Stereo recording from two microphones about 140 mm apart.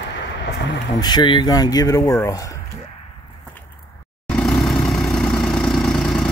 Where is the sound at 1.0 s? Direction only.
30° left (ahead or behind).